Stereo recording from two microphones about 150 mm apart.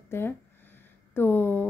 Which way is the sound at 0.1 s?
15° left (ahead or behind).